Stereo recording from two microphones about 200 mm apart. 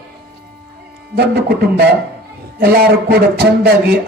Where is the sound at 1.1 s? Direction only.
50° right (ahead or behind).